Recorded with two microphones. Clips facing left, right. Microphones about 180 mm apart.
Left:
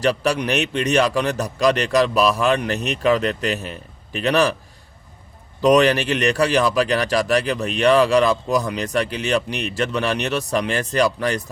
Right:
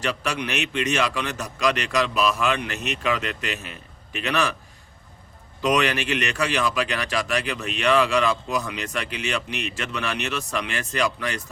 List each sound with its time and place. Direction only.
0.0 s a man's voice: 40° left (ahead or behind)
5.6 s a man's voice: 35° left (ahead or behind)